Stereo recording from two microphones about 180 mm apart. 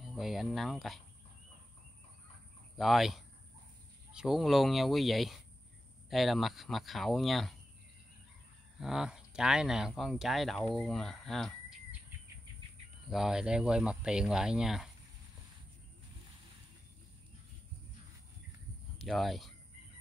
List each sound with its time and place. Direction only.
0.0 s speech: centre (ahead or behind)
2.8 s speech: centre (ahead or behind)
8.7 s speech: centre (ahead or behind)
13.1 s speech: 5° right (ahead or behind)
18.9 s speech: centre (ahead or behind)